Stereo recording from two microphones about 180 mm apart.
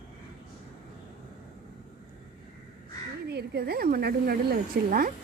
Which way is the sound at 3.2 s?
65° right (ahead or behind).